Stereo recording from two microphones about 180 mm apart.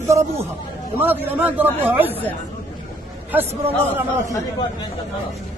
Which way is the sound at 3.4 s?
35° right (ahead or behind).